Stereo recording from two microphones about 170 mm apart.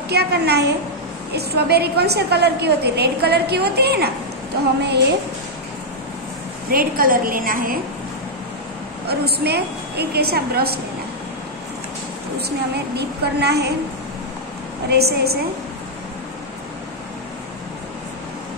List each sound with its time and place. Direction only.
0.1 s a woman's voice: 75° right (ahead or behind)
6.7 s a woman's voice: 60° right (ahead or behind)
9.0 s a woman's voice: 70° right (ahead or behind)
12.4 s a woman's voice: 75° right (ahead or behind)
14.9 s a woman's voice: 70° right (ahead or behind)